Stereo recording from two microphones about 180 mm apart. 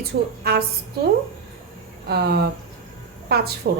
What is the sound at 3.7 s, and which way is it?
Speech, 65° right (ahead or behind).